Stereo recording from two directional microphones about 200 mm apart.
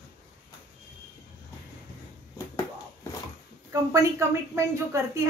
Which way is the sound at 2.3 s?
15° left (ahead or behind).